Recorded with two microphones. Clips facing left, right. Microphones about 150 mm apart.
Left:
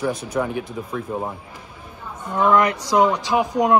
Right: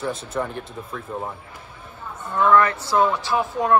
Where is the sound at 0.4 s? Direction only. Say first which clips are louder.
Left 4 dB; 10° left (ahead or behind).